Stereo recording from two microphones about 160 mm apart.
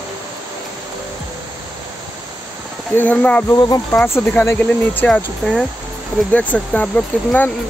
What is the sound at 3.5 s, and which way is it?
Speech, 20° left (ahead or behind).